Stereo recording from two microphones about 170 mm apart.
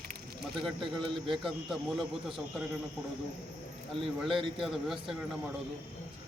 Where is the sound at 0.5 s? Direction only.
Centre (ahead or behind).